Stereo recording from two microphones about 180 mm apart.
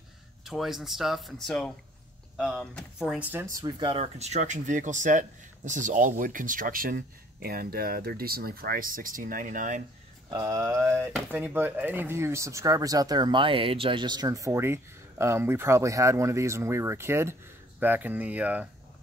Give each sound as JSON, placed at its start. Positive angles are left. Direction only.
{"t": 0.5, "sound": "speech", "side_deg": 0}
{"t": 10.3, "sound": "speech", "side_deg": -20}